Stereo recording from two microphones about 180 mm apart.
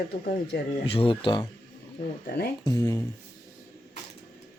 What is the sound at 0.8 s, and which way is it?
Speech, 30° left (ahead or behind).